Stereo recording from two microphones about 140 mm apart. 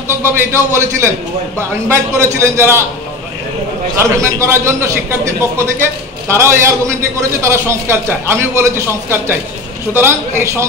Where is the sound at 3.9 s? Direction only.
20° right (ahead or behind).